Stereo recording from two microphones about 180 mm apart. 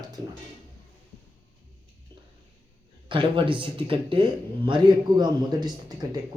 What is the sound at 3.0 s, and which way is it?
Speech, 30° right (ahead or behind).